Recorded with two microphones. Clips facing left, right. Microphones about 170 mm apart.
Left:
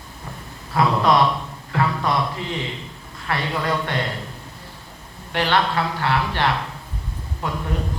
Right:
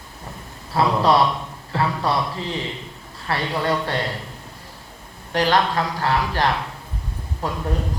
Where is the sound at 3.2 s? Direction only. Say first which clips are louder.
Right 1 dB; 30° right (ahead or behind).